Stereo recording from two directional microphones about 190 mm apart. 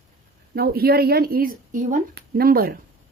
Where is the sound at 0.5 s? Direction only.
55° right (ahead or behind).